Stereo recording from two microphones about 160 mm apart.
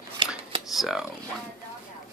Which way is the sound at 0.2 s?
30° right (ahead or behind).